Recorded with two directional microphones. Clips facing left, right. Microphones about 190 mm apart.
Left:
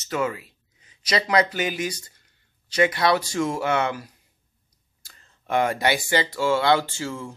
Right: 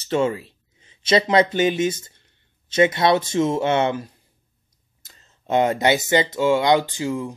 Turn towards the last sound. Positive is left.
turn(degrees=-15)  # may be behind; listen again after turning